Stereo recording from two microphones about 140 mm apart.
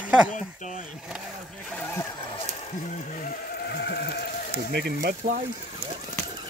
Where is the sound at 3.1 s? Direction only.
80° left.